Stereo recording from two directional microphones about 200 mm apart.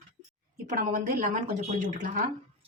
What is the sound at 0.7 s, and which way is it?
Speech, 40° right (ahead or behind).